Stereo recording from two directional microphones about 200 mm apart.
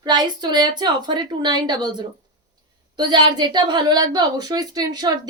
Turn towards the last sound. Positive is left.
turn(degrees=-20)  # may be behind; listen again after turning